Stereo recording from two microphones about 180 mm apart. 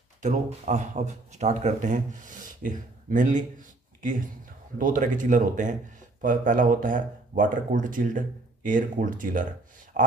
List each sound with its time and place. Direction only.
0.2 s speech: 40° right (ahead or behind)
4.7 s speech: 50° right (ahead or behind)
9.9 s a sound: 45° right (ahead or behind)